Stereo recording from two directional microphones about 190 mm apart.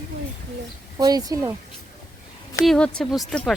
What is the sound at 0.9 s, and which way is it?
Speech, 20° right (ahead or behind).